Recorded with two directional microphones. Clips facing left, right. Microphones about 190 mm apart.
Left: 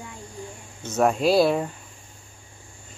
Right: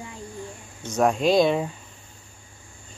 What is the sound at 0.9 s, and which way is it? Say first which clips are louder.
Speech: even; 5° left (ahead or behind).